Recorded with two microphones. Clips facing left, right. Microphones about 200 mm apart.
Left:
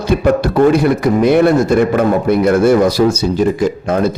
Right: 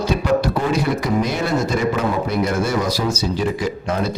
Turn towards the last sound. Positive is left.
turn(degrees=50)  # may be behind; listen again after turning